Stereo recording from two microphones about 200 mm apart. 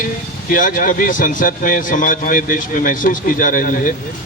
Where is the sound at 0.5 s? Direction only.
45° left (ahead or behind).